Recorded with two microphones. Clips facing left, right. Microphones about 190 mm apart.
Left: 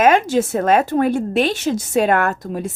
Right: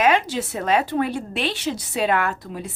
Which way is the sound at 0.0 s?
45° left (ahead or behind).